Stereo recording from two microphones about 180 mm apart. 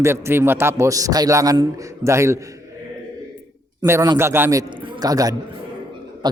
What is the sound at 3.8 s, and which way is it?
A man's voice, 20° right (ahead or behind).